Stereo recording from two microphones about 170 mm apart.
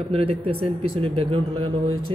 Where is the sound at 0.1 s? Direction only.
35° right (ahead or behind).